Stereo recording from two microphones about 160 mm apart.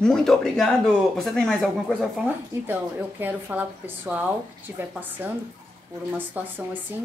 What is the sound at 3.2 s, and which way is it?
A woman's voice, 10° right (ahead or behind).